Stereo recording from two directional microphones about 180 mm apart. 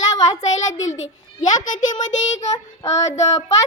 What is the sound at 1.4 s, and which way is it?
A child's voice, 45° left (ahead or behind).